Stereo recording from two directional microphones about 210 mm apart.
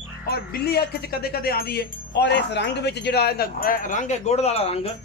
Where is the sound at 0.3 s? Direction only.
50° left (ahead or behind).